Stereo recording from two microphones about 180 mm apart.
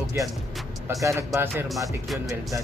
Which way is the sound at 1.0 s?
15° right (ahead or behind).